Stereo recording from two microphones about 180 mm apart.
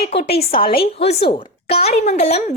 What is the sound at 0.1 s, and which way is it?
Speech, 35° left (ahead or behind).